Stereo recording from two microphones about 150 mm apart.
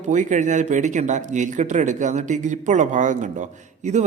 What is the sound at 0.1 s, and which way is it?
Speech, 55° right (ahead or behind).